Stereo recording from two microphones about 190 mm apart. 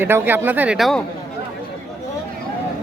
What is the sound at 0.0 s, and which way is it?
Speech, 10° right (ahead or behind).